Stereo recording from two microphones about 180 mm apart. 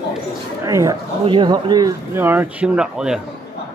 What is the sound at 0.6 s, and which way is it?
Speech, 20° right (ahead or behind).